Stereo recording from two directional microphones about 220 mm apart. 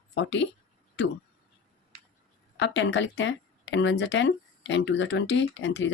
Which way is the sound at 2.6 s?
55° left (ahead or behind).